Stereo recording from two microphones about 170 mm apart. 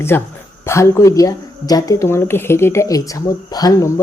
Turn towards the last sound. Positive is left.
turn(degrees=20)  # may be behind; listen again after turning